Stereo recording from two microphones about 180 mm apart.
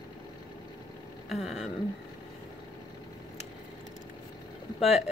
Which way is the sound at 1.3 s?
Centre (ahead or behind).